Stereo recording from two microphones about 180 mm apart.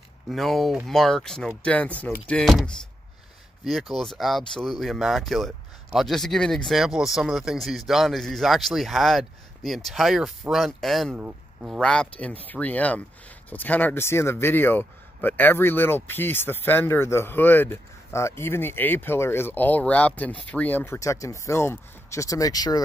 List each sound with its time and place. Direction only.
0.3 s speech: centre (ahead or behind); by 22.8 s 20° left (ahead or behind)